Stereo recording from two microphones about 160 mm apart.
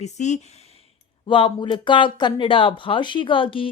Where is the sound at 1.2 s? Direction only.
30° left (ahead or behind).